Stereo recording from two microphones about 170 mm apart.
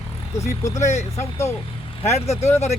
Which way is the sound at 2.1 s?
40° left (ahead or behind).